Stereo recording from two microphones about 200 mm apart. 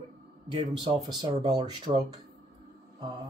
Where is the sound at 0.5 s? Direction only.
25° right (ahead or behind).